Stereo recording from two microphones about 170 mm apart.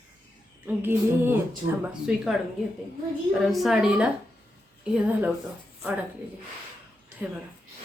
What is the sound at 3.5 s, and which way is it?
Speech, centre (ahead or behind).